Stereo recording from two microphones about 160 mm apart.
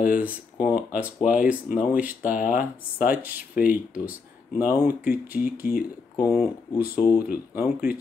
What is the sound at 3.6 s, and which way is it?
Speech, 10° right (ahead or behind).